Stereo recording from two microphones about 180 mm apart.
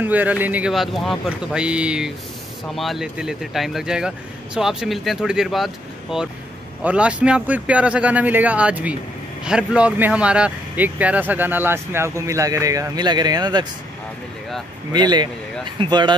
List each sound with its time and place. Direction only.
0.0 s speech: 10° right (ahead or behind)
14.9 s speech: 25° right (ahead or behind)